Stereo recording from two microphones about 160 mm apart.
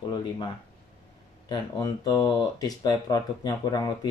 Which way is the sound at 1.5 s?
25° left (ahead or behind).